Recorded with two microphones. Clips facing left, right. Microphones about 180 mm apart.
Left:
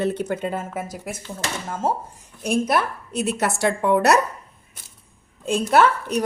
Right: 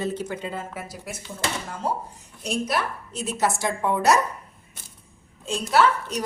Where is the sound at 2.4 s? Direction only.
55° left (ahead or behind).